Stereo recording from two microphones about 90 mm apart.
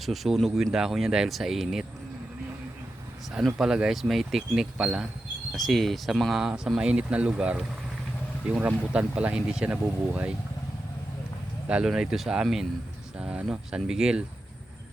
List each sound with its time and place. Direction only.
0.0 s speech: centre (ahead or behind)
3.4 s speech: 5° right (ahead or behind)
11.7 s speech: 5° right (ahead or behind)